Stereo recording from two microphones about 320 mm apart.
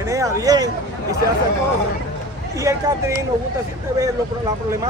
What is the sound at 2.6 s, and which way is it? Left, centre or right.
Speech, centre.